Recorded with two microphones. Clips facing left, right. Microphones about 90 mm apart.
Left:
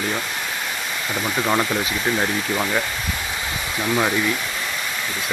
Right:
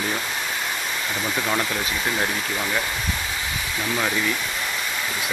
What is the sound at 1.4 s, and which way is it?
Speech, 20° left (ahead or behind).